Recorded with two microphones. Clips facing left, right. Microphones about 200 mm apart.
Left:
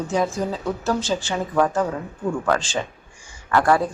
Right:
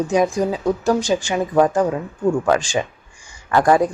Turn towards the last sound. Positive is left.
turn(degrees=-15)  # may be behind; listen again after turning